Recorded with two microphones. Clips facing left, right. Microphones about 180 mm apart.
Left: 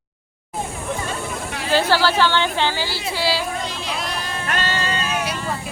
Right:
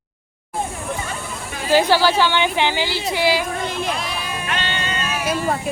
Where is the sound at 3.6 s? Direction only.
55° right (ahead or behind).